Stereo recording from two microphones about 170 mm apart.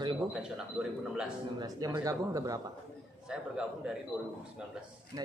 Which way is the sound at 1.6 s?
20° right (ahead or behind).